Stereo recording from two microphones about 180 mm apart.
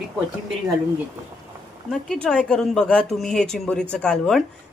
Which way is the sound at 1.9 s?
Centre (ahead or behind).